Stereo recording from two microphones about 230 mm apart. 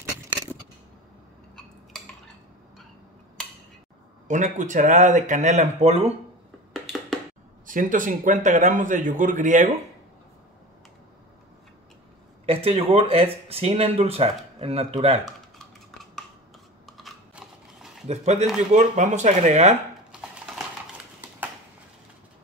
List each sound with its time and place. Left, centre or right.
4.3 s speech: right
6.7 s a sound: centre
7.6 s speech: right
12.4 s speech: right
16.8 s scissors: centre
18.0 s speech: right
20.1 s a sound: centre